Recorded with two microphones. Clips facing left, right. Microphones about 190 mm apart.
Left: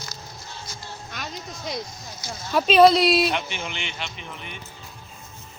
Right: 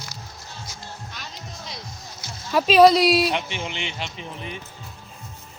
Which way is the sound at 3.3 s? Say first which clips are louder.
Right 1 dB; 25° right (ahead or behind).